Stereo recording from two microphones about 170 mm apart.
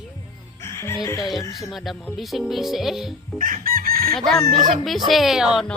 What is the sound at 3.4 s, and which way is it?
Chicken, 50° right (ahead or behind).